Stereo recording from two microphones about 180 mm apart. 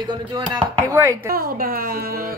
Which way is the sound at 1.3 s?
55° right (ahead or behind).